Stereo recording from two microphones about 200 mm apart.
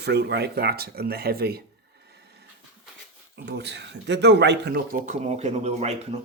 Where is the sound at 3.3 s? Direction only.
55° right (ahead or behind).